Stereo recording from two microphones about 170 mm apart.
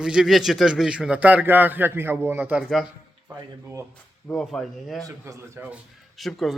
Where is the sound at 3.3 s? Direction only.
20° right (ahead or behind).